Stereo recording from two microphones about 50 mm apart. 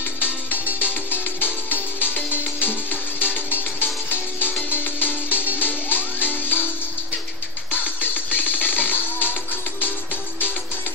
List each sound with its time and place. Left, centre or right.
0.7 s music: left
7.7 s music: left